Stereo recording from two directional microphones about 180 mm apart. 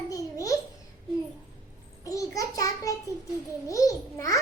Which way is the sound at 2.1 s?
20° left (ahead or behind).